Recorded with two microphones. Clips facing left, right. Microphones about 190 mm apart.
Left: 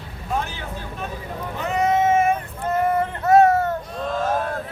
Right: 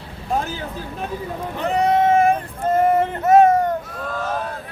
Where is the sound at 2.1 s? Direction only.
35° right (ahead or behind).